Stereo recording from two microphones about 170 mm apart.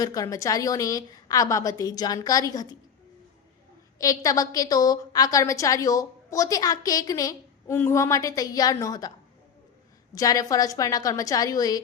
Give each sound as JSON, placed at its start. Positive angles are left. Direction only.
{"t": 0.0, "sound": "a woman's voice", "side_deg": 20}
{"t": 3.9, "sound": "a woman's voice", "side_deg": 20}